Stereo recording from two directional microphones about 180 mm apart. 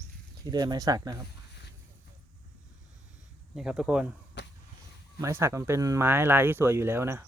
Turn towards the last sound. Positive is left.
turn(degrees=-15)  # may be behind; listen again after turning